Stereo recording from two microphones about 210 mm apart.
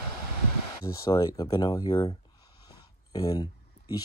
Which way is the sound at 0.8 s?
15° left (ahead or behind).